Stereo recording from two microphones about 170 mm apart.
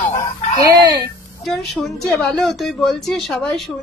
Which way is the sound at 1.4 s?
Centre (ahead or behind).